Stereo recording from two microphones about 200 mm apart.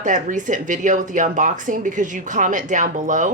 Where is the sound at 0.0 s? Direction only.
40° right (ahead or behind).